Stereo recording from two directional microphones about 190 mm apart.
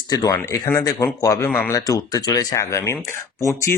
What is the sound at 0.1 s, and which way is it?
Speech, 20° left (ahead or behind).